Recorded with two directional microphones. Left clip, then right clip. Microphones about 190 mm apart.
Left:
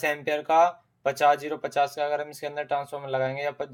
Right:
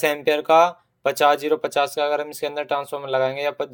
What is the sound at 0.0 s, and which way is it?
A man's voice, 45° right (ahead or behind).